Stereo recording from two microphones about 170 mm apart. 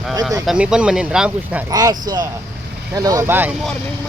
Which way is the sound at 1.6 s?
20° right (ahead or behind).